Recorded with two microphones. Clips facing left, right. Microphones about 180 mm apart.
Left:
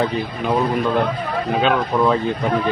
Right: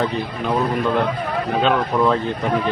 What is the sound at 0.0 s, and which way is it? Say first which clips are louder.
A man's voice: left 1 dB; 5° left (ahead or behind).